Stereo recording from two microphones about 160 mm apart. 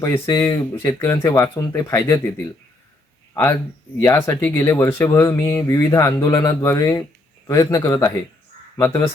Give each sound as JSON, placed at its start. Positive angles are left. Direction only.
{"t": 0.0, "sound": "speech", "side_deg": 15}
{"t": 4.0, "sound": "speech", "side_deg": 20}